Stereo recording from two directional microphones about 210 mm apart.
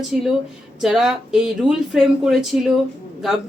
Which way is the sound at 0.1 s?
Centre (ahead or behind).